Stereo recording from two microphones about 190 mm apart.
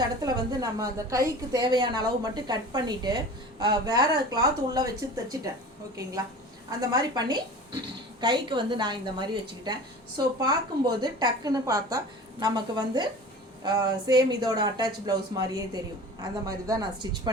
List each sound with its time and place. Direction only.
0.0 s a woman's voice: 20° right (ahead or behind)
6.7 s a woman's voice: 20° right (ahead or behind)